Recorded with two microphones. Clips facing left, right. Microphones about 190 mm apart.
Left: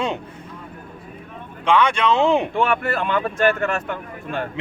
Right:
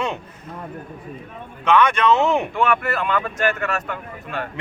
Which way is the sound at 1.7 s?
10° left (ahead or behind).